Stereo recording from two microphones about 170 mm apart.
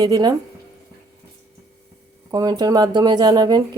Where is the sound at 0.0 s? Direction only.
20° right (ahead or behind).